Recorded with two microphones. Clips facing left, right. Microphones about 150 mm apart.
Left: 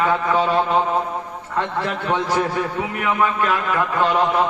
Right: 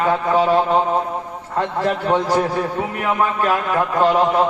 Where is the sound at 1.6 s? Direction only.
40° right (ahead or behind).